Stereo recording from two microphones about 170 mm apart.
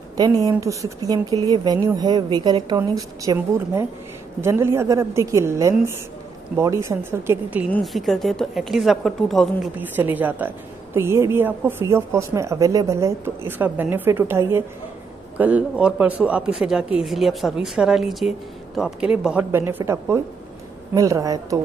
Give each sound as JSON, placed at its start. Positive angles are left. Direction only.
{"t": 0.2, "sound": "a woman's voice", "side_deg": -25}
{"t": 7.7, "sound": "speech", "side_deg": 0}
{"t": 9.8, "sound": "a woman's voice", "side_deg": -10}